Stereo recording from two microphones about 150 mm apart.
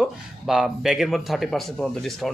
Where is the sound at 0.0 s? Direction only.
5° right (ahead or behind).